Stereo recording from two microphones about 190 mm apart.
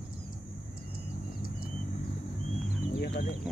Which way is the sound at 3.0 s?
50° left (ahead or behind).